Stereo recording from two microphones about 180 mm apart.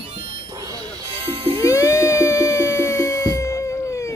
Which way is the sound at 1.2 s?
30° right (ahead or behind).